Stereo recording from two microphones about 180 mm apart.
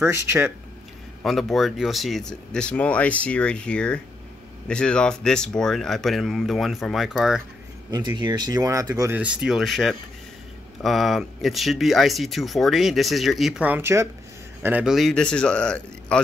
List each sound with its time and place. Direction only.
0.0 s speech: 15° right (ahead or behind)
1.2 s speech: centre (ahead or behind)
7.9 s speech: 25° right (ahead or behind)
9.1 s speech: 5° right (ahead or behind)